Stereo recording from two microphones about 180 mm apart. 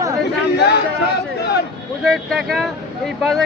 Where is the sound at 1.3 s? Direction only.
65° left (ahead or behind).